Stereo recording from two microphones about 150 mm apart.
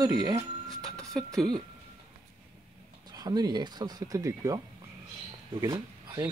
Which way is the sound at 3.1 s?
25° right (ahead or behind).